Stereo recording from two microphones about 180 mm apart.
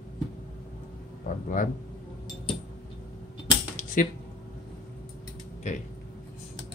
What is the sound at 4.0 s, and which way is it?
Speech, 50° left (ahead or behind).